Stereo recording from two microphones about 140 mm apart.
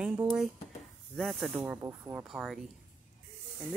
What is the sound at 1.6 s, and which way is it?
Speech, 15° right (ahead or behind).